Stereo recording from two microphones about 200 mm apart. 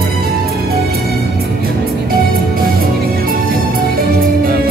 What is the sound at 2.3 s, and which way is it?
Music, 45° right (ahead or behind).